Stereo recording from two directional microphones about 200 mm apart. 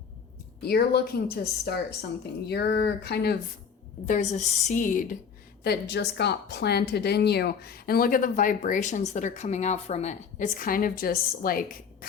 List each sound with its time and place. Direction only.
0.6 s speech: 50° left (ahead or behind)
4.0 s a woman's voice: 35° left (ahead or behind)
5.6 s speech: 55° left (ahead or behind)